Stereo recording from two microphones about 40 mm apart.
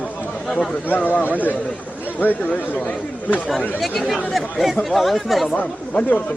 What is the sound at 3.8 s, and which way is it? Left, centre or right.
Speech, centre.